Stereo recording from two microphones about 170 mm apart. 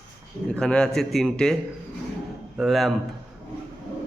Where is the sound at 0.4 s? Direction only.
5° left (ahead or behind).